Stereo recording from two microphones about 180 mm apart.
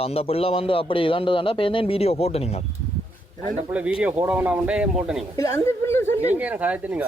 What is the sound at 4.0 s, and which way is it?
Speech, 10° right (ahead or behind).